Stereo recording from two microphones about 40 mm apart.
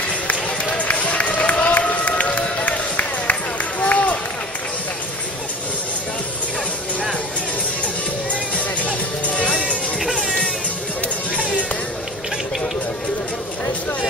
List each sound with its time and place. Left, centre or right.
0.3 s run: left
8.3 s music: left
9.9 s music: centre
11.0 s music: left